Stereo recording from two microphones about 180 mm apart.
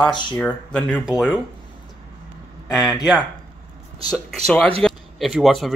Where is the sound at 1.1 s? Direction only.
5° right (ahead or behind).